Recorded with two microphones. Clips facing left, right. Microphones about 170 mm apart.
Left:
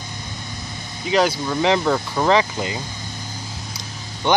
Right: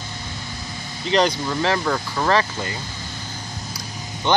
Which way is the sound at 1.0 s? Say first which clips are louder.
Left 1 dB; 5° left (ahead or behind).